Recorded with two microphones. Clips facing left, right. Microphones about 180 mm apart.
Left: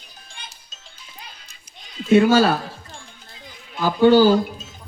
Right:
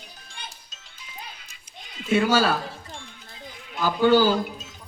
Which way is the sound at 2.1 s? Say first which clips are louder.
Left 7 dB; 40° left (ahead or behind).